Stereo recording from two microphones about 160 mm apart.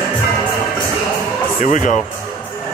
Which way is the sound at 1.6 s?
50° left (ahead or behind).